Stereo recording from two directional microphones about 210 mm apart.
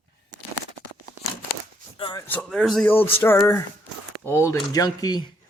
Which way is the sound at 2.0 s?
20° left (ahead or behind).